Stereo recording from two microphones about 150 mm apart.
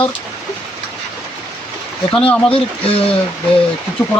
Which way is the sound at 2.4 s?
40° left (ahead or behind).